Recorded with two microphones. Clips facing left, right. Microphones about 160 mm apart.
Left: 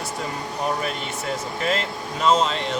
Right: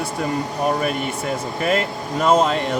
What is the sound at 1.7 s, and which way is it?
Speech, 55° right (ahead or behind).